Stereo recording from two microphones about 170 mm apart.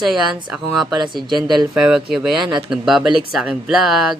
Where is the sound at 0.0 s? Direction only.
Centre (ahead or behind).